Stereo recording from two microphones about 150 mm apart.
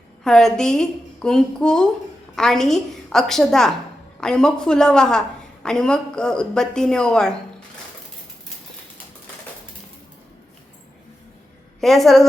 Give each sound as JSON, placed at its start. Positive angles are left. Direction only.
{"t": 0.3, "sound": "a woman's voice", "side_deg": 5}
{"t": 11.8, "sound": "a woman's voice", "side_deg": 0}